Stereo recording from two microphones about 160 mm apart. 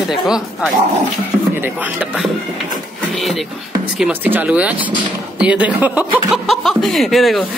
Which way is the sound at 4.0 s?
10° right (ahead or behind).